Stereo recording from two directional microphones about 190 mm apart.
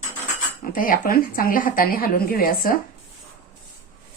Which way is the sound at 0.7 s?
45° left (ahead or behind).